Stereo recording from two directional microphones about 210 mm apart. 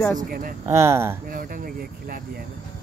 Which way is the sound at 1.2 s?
40° right (ahead or behind).